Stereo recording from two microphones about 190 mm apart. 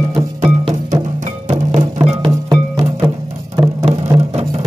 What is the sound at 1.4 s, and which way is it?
Music, 35° right (ahead or behind).